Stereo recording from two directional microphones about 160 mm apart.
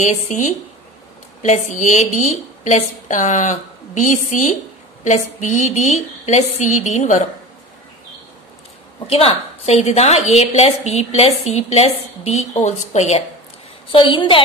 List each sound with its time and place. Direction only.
0.0 s a woman's voice: 50° left (ahead or behind)
9.0 s a woman's voice: 40° left (ahead or behind)
13.9 s a woman's voice: 30° left (ahead or behind)